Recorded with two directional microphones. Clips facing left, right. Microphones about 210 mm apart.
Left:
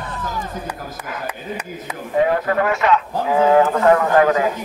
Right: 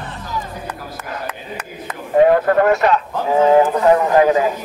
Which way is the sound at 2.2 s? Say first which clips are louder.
Right 7 dB; 45° right (ahead or behind).